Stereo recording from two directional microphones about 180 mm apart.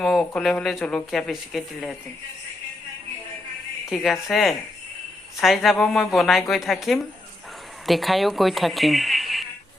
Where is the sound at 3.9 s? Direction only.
Centre (ahead or behind).